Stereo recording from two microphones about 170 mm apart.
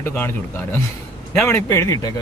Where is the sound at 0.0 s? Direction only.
15° left (ahead or behind).